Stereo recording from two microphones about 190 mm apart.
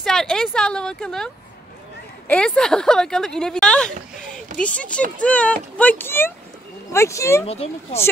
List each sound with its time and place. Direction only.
0.0 s speech: centre (ahead or behind)
7.4 s a child's voice: 35° left (ahead or behind)